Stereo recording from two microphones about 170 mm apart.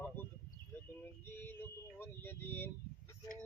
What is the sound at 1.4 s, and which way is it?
Vehicle, 10° left (ahead or behind).